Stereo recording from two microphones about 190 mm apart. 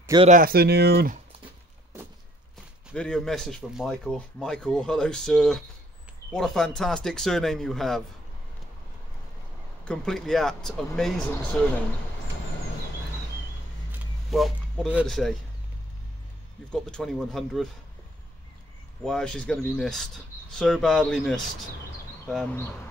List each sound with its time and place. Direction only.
0.3 s speech: 50° right (ahead or behind)
2.9 s speech: 5° left (ahead or behind)
9.8 s speech: 5° left (ahead or behind)
13.9 s a sound: centre (ahead or behind)
16.7 s speech: 5° left (ahead or behind)
19.0 s speech: 5° left (ahead or behind)